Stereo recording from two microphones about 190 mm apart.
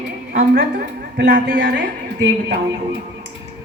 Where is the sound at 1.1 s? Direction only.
55° right (ahead or behind).